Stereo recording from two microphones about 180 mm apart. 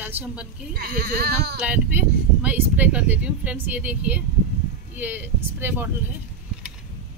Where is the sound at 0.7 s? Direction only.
60° right (ahead or behind).